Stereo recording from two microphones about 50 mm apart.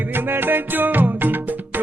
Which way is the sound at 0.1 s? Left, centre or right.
Right.